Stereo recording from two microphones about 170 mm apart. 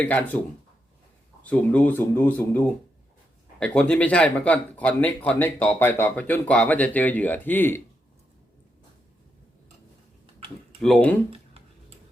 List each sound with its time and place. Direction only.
0.0 s speech: 10° left (ahead or behind)
10.8 s speech: 5° left (ahead or behind)